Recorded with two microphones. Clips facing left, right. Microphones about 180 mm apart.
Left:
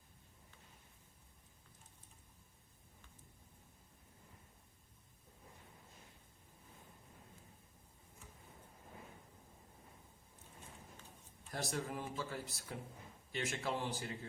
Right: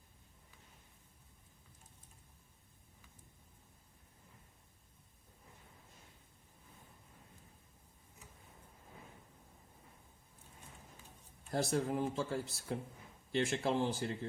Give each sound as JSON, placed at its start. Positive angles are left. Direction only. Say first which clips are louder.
{"t": 11.5, "sound": "speech", "louder": "right 7 dB", "side_deg": -25}